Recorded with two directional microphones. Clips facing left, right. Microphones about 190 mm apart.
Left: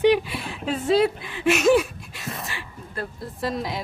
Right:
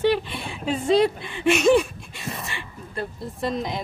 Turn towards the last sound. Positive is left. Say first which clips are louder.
# right 1 dB
turn(degrees=0)  # may be behind; listen again after turning